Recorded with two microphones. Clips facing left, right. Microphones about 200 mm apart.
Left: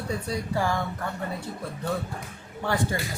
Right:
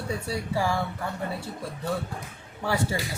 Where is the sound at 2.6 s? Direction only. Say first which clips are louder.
Even; 10° right (ahead or behind).